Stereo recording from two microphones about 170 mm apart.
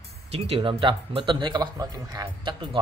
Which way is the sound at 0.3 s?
35° right (ahead or behind).